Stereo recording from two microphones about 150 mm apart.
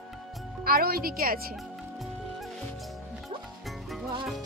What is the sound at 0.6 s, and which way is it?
Speech, 90° right.